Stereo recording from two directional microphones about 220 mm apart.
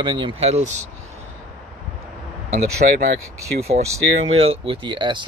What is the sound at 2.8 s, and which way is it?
Speech, 45° right (ahead or behind).